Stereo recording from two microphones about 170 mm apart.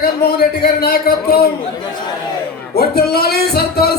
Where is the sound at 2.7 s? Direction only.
65° left (ahead or behind).